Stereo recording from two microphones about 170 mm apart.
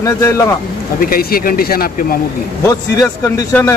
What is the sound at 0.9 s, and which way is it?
Speech, 55° left (ahead or behind).